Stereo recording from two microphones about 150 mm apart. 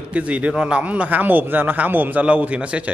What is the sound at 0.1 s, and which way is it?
A man's voice, 10° right (ahead or behind).